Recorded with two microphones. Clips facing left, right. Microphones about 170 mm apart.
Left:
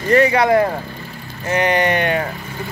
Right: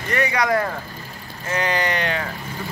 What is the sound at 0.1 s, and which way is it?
Speech, 30° left (ahead or behind).